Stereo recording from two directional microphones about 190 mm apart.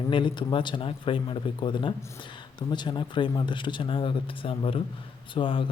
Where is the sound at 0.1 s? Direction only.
25° left (ahead or behind).